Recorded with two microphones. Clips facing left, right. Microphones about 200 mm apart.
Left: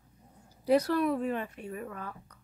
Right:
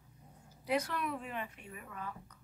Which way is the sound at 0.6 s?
35° left (ahead or behind).